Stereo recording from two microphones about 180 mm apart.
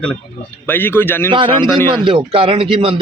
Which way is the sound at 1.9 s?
25° right (ahead or behind).